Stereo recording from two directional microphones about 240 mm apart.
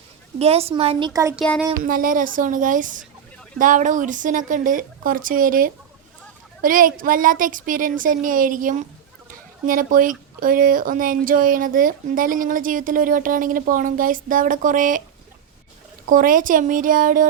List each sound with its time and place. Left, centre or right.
0.3 s a woman's voice: right
1.4 s a sound: centre
1.8 s speech: right
16.0 s speech: right